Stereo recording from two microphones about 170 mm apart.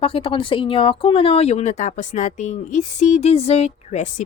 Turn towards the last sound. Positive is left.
turn(degrees=40)  # may be behind; listen again after turning